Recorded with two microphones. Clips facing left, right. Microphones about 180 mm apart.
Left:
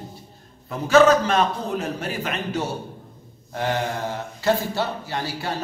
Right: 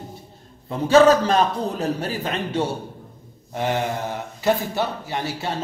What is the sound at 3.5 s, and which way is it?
A man's voice, 20° right (ahead or behind).